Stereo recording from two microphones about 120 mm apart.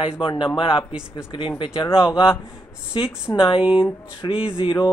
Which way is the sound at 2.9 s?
45° left (ahead or behind).